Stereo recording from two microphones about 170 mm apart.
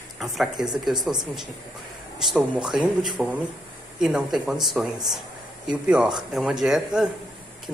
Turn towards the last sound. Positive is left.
turn(degrees=-5)  # may be behind; listen again after turning